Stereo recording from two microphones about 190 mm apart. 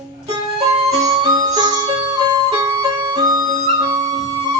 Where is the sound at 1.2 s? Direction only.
25° right (ahead or behind).